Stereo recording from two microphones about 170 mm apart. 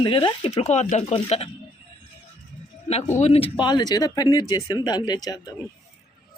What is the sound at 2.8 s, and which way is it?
Speech, 40° left (ahead or behind).